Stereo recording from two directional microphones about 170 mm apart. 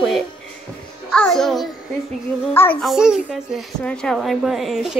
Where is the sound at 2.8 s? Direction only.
Centre (ahead or behind).